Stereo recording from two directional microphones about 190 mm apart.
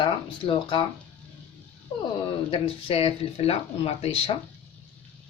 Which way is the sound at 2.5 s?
30° left (ahead or behind).